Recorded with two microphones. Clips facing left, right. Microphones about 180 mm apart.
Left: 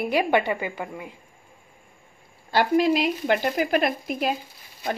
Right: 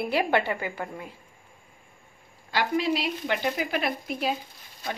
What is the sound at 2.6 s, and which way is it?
Speech, 50° left (ahead or behind).